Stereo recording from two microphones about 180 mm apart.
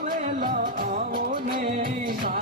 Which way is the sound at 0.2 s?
45° right (ahead or behind).